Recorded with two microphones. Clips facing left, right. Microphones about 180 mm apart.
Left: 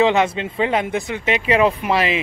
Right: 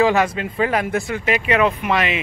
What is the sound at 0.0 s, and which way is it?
Speech, 25° left (ahead or behind).